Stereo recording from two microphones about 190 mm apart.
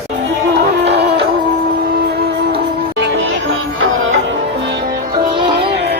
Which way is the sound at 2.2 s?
60° right (ahead or behind).